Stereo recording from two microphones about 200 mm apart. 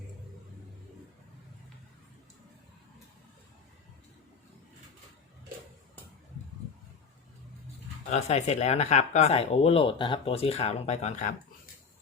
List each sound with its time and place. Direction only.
8.1 s speech: 35° left (ahead or behind)